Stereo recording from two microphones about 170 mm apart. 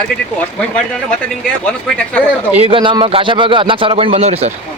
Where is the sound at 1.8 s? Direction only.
5° left (ahead or behind).